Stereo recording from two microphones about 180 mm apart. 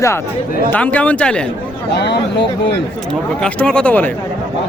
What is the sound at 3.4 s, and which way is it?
Speech, 5° left (ahead or behind).